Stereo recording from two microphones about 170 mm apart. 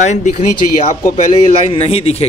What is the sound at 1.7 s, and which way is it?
Speech, 35° left (ahead or behind).